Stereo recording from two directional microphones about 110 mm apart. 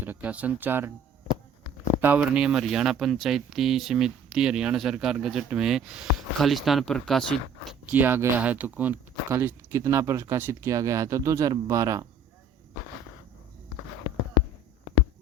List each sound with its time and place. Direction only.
0.0 s speech: 15° right (ahead or behind)
2.0 s speech: 15° right (ahead or behind); by 7.8 s centre (ahead or behind)
7.9 s speech: 15° right (ahead or behind)